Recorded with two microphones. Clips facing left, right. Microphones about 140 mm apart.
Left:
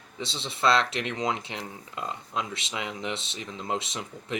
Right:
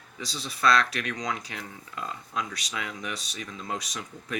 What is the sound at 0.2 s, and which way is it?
Speech, 25° left (ahead or behind).